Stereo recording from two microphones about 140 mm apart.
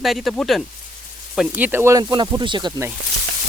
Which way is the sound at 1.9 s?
35° right (ahead or behind).